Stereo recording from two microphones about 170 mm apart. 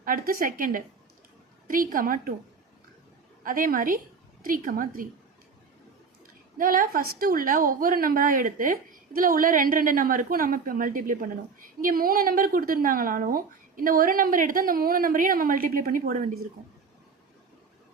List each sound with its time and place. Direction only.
0.0 s a woman's voice: 55° right (ahead or behind)
3.4 s a woman's voice: 55° right (ahead or behind)
6.6 s a woman's voice: 55° right (ahead or behind)